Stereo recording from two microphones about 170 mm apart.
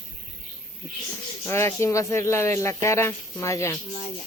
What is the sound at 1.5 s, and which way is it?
Speech, 15° left (ahead or behind).